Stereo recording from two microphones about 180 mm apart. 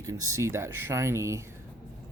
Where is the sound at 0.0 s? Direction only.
20° right (ahead or behind).